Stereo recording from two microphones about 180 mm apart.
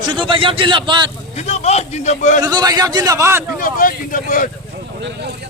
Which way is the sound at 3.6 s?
50° left (ahead or behind).